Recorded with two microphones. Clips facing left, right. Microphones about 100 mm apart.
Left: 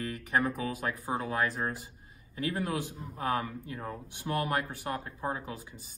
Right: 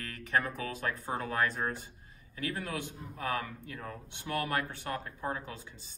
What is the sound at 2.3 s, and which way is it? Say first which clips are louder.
Speech: left 4 dB; 20° left (ahead or behind).